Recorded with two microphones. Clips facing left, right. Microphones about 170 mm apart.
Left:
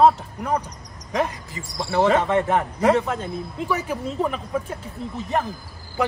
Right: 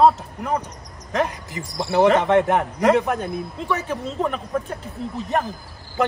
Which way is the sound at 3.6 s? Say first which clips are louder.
Left 1 dB; 5° left (ahead or behind).